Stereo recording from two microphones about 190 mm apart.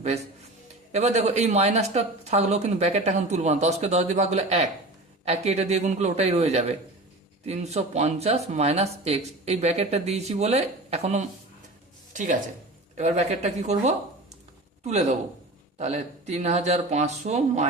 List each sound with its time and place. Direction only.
0.9 s speech: 35° right (ahead or behind)
15.8 s speech: 35° right (ahead or behind)